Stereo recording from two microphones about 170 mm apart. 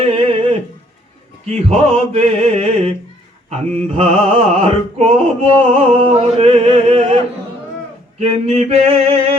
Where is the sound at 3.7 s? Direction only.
35° right (ahead or behind).